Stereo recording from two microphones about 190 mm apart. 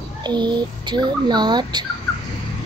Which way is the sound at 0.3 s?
25° right (ahead or behind).